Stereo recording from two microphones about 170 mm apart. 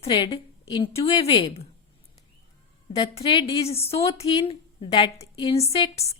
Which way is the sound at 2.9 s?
35° left (ahead or behind).